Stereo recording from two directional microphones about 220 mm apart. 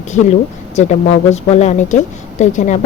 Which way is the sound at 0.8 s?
30° left (ahead or behind).